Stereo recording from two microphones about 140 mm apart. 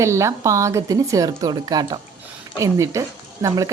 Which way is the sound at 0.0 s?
20° right (ahead or behind).